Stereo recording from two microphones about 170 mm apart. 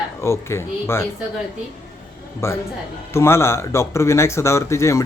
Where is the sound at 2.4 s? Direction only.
15° left (ahead or behind).